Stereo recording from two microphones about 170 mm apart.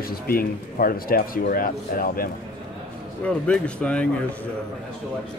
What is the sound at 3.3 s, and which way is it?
Speech, 5° left (ahead or behind).